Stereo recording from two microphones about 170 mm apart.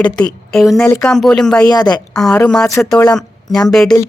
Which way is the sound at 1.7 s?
25° left (ahead or behind).